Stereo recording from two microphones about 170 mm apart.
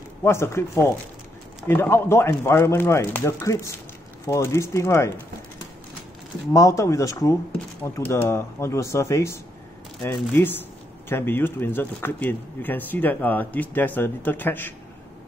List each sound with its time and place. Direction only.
0.2 s speech: 15° left (ahead or behind)
6.5 s speech: 20° left (ahead or behind)